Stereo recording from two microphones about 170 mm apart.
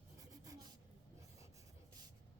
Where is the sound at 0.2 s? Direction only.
20° right (ahead or behind).